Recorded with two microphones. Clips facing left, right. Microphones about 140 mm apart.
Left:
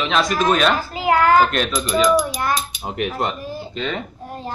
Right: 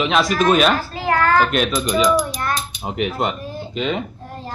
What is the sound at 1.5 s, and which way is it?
Speech, 10° right (ahead or behind).